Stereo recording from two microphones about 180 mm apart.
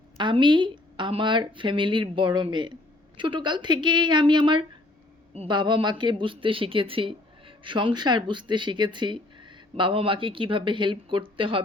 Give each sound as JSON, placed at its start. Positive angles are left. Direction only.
{"t": 0.2, "sound": "speech", "side_deg": -25}